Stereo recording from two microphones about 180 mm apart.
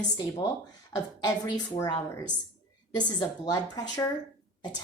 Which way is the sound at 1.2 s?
25° left (ahead or behind).